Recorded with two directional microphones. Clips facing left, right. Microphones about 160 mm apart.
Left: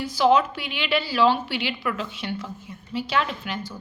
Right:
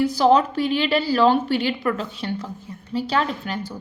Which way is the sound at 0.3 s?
40° right (ahead or behind).